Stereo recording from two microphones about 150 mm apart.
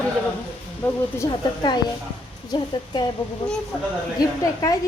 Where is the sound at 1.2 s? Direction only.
30° left (ahead or behind).